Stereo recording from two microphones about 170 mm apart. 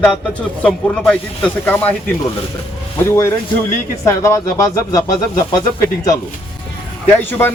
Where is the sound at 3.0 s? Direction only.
15° left (ahead or behind).